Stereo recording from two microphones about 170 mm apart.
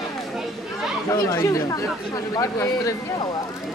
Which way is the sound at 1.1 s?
20° left (ahead or behind).